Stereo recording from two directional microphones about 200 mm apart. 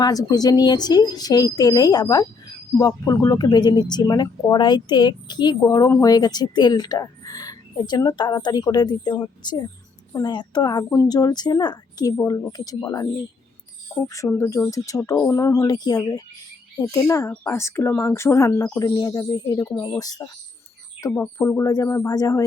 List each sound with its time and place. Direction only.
0.0 s speech: 20° left (ahead or behind)
14.1 s speech: 15° left (ahead or behind)